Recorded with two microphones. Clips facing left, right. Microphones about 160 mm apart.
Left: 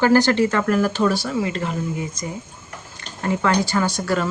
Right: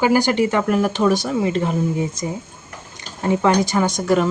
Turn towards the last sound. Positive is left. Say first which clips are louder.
# right 4 dB
turn(degrees=-20)  # may be behind; listen again after turning